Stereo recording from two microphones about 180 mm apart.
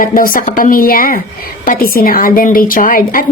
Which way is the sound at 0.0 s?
50° left (ahead or behind).